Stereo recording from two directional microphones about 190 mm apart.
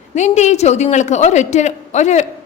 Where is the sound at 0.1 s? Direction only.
40° left (ahead or behind).